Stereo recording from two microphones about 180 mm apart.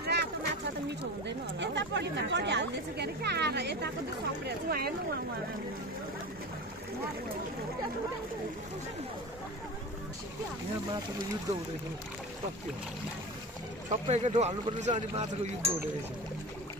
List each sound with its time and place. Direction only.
0.0 s a sound: 65° right (ahead or behind)
0.8 s speech: 75° right (ahead or behind); by 4.9 s 60° right (ahead or behind)
13.8 s speech: 35° right (ahead or behind)